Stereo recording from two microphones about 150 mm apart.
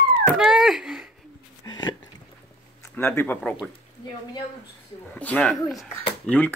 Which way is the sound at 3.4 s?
5° left (ahead or behind).